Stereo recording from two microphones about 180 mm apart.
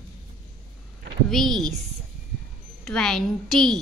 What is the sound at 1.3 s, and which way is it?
A woman's voice, centre (ahead or behind).